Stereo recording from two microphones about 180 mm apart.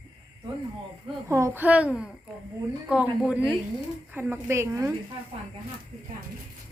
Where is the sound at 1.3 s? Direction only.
15° right (ahead or behind).